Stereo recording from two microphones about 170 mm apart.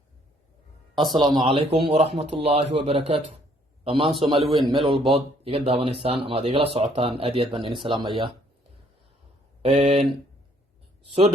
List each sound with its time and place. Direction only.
0.9 s speech: 25° right (ahead or behind)
9.6 s speech: 40° right (ahead or behind)